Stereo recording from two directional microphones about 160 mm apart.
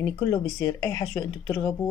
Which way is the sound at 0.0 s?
20° left (ahead or behind).